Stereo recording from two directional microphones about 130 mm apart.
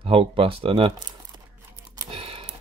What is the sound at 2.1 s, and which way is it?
Typing, 45° right (ahead or behind).